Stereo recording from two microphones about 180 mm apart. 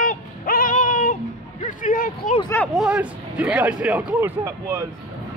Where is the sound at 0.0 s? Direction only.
50° left (ahead or behind).